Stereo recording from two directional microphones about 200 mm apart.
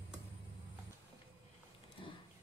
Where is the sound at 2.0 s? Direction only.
25° left (ahead or behind).